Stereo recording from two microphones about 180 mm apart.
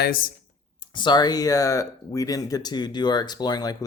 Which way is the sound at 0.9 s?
25° left (ahead or behind).